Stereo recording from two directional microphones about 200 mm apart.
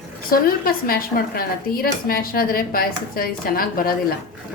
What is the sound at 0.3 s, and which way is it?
A woman's voice, 45° left (ahead or behind).